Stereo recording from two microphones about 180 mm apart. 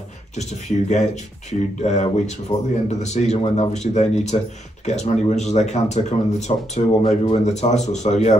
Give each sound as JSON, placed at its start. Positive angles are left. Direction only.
{"t": 0.4, "sound": "speech", "side_deg": 40}